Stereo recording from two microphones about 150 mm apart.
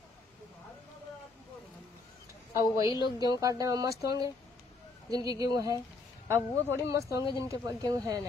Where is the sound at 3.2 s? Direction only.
25° right (ahead or behind).